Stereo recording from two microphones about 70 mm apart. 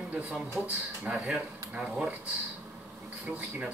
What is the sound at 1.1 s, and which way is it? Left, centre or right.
Speech, centre.